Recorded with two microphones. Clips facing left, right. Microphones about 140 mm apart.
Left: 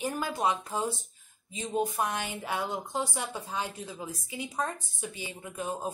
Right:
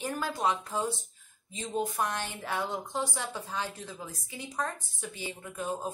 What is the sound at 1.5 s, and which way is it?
Speech, 10° left (ahead or behind).